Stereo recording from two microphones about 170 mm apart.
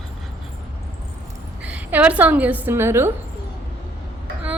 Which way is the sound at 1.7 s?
10° right (ahead or behind).